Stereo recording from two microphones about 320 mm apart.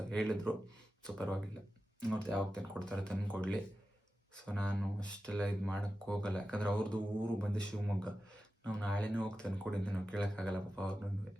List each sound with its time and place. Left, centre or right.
0.1 s speech: centre